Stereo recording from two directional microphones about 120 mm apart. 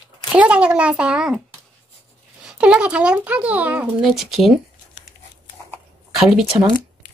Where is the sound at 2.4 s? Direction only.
10° right (ahead or behind).